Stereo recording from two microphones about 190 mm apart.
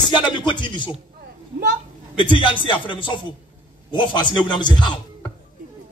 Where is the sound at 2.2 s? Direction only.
25° left (ahead or behind).